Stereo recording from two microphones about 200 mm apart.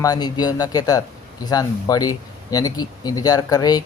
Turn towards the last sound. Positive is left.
turn(degrees=20)  # may be behind; listen again after turning